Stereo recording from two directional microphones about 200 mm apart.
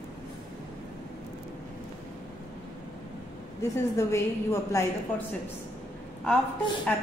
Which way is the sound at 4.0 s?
15° left (ahead or behind).